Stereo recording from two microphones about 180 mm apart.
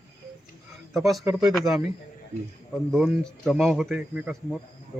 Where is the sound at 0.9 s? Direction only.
Centre (ahead or behind).